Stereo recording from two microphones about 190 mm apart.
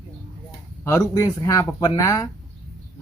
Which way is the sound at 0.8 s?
15° left (ahead or behind).